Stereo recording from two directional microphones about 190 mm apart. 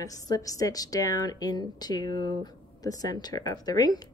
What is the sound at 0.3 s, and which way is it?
A woman's voice, 20° left (ahead or behind).